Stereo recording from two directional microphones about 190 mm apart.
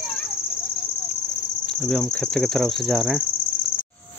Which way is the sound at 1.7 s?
5° left (ahead or behind).